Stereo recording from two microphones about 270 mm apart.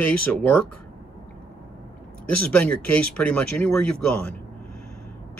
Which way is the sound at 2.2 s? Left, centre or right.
Left.